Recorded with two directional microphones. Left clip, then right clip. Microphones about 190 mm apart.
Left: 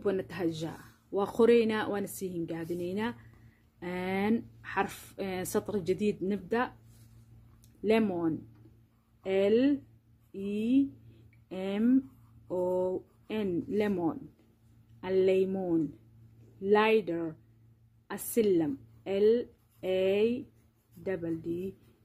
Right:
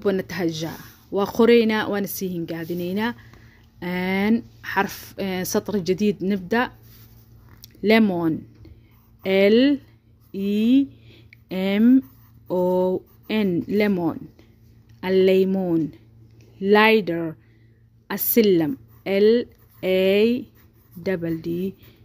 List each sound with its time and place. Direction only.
0.0 s a woman's voice: 35° right (ahead or behind)
7.8 s speech: 40° right (ahead or behind)